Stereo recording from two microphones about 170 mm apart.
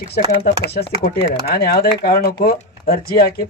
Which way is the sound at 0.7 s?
70° left (ahead or behind).